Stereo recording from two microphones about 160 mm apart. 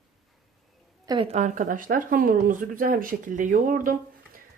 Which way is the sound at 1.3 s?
50° right (ahead or behind).